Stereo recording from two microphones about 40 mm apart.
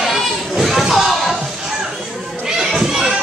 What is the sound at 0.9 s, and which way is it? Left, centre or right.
Slam, centre.